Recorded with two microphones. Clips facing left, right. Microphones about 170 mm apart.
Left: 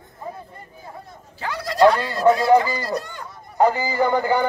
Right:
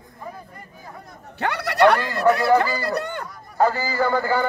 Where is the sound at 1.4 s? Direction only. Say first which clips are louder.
Left 1 dB; 70° right (ahead or behind).